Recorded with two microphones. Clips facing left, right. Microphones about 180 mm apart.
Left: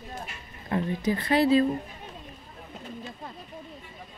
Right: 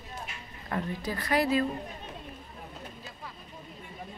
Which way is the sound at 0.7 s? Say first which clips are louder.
Left 6 dB; 25° left (ahead or behind).